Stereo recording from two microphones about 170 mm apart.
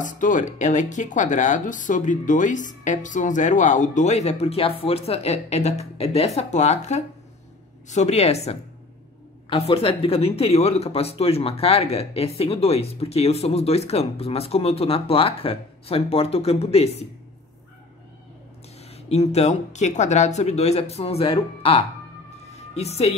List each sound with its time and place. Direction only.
0.0 s speech: 50° left (ahead or behind)
18.8 s speech: 35° left (ahead or behind)
22.5 s music: 40° left (ahead or behind)